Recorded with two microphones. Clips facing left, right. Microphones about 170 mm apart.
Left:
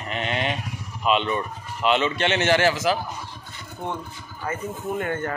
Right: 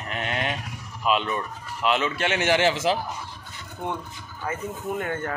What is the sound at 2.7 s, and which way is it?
Speech, 25° right (ahead or behind).